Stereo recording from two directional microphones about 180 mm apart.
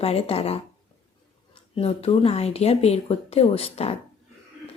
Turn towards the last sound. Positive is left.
turn(degrees=35)  # may be behind; listen again after turning